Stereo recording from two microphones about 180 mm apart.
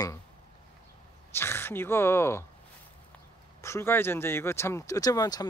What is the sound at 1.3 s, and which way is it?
Speech, 15° left (ahead or behind).